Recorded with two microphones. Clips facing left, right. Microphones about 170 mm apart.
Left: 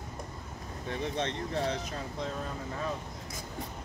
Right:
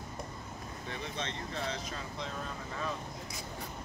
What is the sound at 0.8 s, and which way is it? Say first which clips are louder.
Speech: left 7 dB; 60° left (ahead or behind).